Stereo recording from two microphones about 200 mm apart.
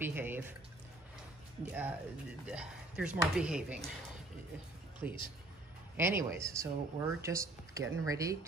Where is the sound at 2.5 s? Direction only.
5° right (ahead or behind).